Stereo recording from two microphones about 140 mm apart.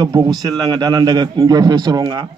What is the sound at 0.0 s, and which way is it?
A man's voice, 30° right (ahead or behind).